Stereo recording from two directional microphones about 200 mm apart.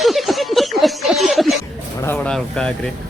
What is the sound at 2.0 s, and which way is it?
Speech, 10° left (ahead or behind).